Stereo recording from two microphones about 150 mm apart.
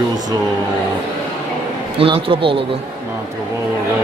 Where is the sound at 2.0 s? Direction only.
35° right (ahead or behind).